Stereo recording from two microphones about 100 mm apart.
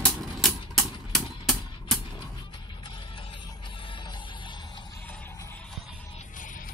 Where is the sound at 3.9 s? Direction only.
50° left (ahead or behind).